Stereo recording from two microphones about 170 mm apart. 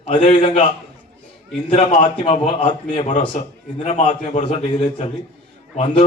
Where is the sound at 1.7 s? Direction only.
30° left (ahead or behind).